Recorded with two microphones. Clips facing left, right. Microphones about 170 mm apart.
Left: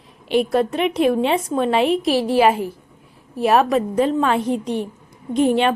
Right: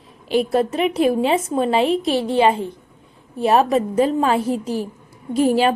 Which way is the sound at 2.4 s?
30° right (ahead or behind).